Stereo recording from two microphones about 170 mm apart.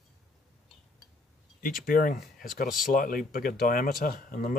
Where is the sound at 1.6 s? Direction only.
55° left (ahead or behind).